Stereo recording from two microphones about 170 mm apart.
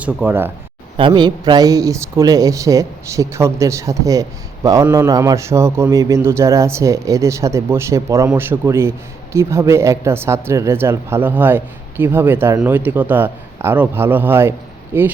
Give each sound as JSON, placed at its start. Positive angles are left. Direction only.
{"t": 0.0, "sound": "speech", "side_deg": -10}
{"t": 0.9, "sound": "speech", "side_deg": -30}